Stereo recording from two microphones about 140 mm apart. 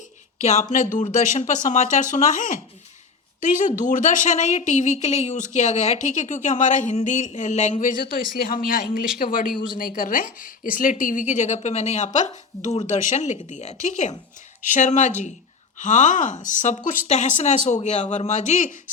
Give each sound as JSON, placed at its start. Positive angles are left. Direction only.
{"t": 0.4, "sound": "speech", "side_deg": 60}